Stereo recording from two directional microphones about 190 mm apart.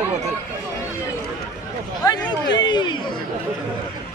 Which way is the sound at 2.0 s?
20° left (ahead or behind).